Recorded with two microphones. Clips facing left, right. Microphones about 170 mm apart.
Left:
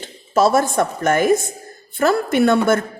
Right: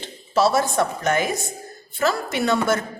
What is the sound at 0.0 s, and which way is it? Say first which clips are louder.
A woman's voice: left 3 dB; 50° left (ahead or behind).